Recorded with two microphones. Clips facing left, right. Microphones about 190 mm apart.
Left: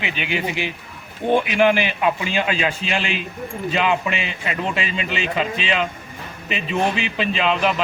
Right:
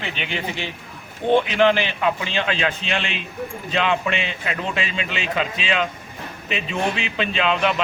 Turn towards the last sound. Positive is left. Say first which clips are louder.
# left 1 dB
turn(degrees=0)  # may be behind; listen again after turning